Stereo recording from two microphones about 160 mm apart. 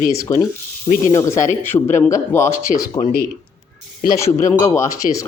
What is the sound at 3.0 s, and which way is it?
Speech, 70° left (ahead or behind).